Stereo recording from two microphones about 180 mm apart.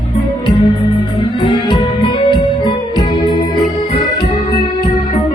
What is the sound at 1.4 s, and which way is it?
Music, 25° left (ahead or behind).